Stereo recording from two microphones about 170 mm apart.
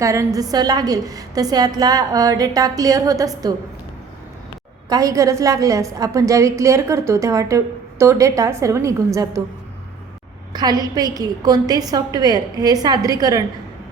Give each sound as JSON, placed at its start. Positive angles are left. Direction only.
{"t": 0.0, "sound": "a woman's voice", "side_deg": -20}
{"t": 4.9, "sound": "a woman's voice", "side_deg": -20}
{"t": 10.5, "sound": "a woman's voice", "side_deg": -25}